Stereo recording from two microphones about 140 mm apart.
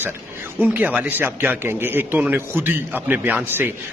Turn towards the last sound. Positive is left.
turn(degrees=-15)  # may be behind; listen again after turning